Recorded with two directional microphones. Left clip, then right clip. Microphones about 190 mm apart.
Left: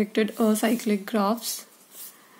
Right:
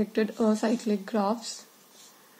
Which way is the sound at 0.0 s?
60° left (ahead or behind).